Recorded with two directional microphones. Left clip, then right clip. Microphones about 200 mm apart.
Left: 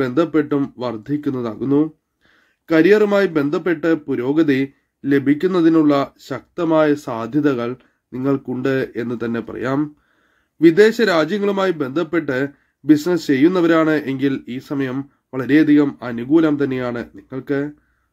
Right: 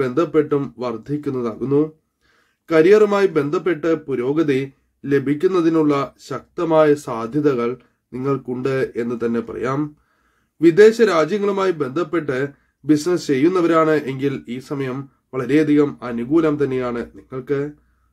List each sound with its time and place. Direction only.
0.0 s a man's voice: 25° left (ahead or behind)